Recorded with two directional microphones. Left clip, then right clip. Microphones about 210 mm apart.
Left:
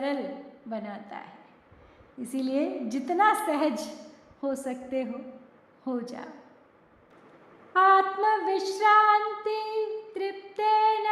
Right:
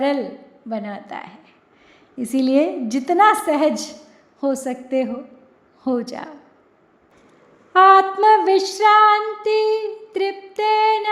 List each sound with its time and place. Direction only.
0.7 s female singing: 30° right (ahead or behind)
2.1 s a woman's voice: 35° right (ahead or behind)
7.7 s female singing: 30° right (ahead or behind)